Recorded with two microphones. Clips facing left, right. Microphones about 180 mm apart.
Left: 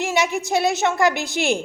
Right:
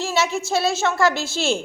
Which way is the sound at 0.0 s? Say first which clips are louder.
Left 1 dB; 15° left (ahead or behind).